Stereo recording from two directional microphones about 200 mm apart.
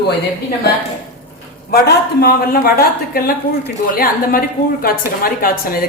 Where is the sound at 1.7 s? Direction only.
50° left (ahead or behind).